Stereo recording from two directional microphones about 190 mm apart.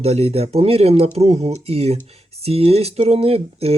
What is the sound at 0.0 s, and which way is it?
Speech, 35° right (ahead or behind).